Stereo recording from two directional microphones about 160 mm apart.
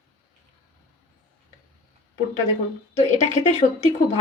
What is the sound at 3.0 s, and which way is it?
Speech, 45° left (ahead or behind).